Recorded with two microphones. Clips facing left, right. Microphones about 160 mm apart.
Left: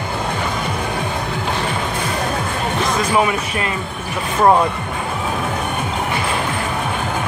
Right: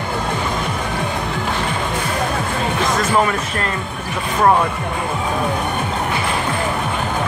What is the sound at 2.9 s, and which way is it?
Speech, 10° left (ahead or behind).